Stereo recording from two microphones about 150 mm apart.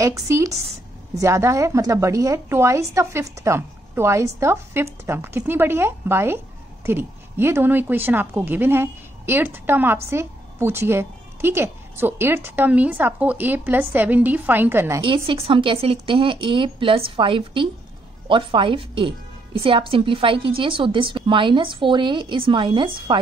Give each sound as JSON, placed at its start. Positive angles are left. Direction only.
{"t": 0.0, "sound": "a woman's voice", "side_deg": -20}
{"t": 15.0, "sound": "a woman's voice", "side_deg": -35}